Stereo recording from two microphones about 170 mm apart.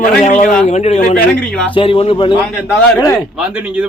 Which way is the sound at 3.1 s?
5° right (ahead or behind).